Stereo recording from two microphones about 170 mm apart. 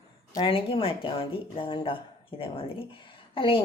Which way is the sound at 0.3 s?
30° left (ahead or behind).